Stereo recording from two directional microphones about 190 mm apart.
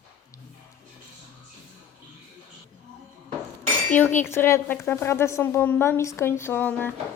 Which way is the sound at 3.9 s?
10° left (ahead or behind).